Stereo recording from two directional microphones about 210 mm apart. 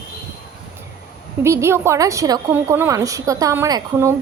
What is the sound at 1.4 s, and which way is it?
A woman's voice, 15° right (ahead or behind).